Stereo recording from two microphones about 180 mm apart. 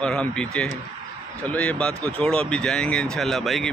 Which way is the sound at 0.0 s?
5° left (ahead or behind).